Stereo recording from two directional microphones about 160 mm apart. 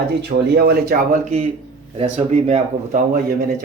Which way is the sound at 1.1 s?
50° right (ahead or behind).